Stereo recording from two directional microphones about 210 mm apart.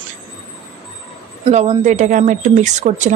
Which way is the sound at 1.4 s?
30° right (ahead or behind).